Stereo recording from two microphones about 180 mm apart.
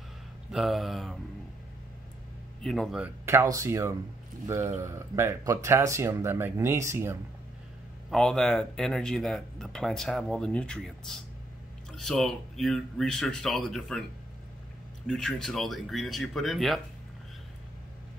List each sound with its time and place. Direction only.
0.5 s speech: centre (ahead or behind)
2.6 s speech: centre (ahead or behind)
3.3 s speech: 15° right (ahead or behind)
8.1 s speech: centre (ahead or behind)
15.0 s speech: 5° left (ahead or behind)